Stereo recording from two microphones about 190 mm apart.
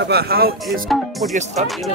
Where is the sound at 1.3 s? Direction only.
35° right (ahead or behind).